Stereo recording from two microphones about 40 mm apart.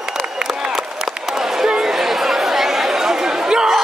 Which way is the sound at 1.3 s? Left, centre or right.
Centre.